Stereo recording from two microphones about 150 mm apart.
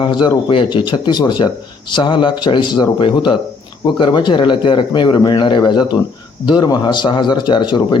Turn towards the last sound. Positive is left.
turn(degrees=30)  # may be behind; listen again after turning